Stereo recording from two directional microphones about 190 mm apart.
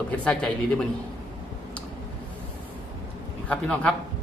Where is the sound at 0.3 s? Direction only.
5° left (ahead or behind).